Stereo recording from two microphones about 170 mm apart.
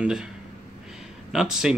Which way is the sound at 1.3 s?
Centre (ahead or behind).